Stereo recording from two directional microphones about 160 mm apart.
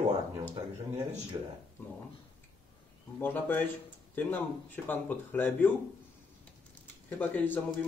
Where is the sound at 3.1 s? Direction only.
10° left (ahead or behind).